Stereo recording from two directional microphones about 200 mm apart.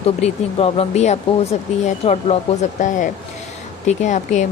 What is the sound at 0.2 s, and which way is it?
Speech, 30° left (ahead or behind).